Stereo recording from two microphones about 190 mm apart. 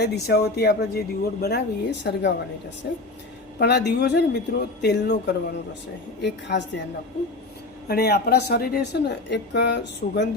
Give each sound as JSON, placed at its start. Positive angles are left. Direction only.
{"t": 0.0, "sound": "speech", "side_deg": 60}
{"t": 6.5, "sound": "speech", "side_deg": 60}
{"t": 7.9, "sound": "speech", "side_deg": 55}